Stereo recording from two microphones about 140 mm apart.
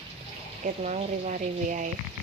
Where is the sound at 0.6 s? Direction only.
65° right (ahead or behind).